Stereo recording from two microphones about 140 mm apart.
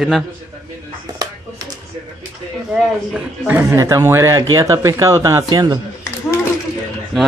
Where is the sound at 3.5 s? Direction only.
20° right (ahead or behind).